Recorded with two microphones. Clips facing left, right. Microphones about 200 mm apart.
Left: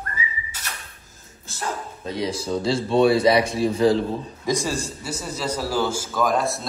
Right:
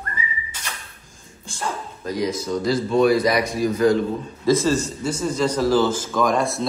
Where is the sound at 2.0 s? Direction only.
30° left (ahead or behind).